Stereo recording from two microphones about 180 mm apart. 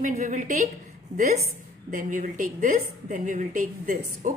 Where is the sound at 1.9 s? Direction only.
45° right (ahead or behind).